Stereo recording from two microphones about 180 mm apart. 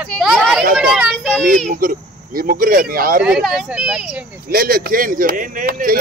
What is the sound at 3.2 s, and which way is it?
Speech, 5° right (ahead or behind).